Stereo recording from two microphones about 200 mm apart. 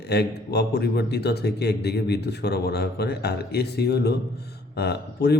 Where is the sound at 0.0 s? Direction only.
55° left (ahead or behind).